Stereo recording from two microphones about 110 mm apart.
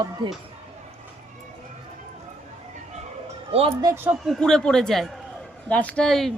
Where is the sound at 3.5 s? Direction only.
60° right (ahead or behind).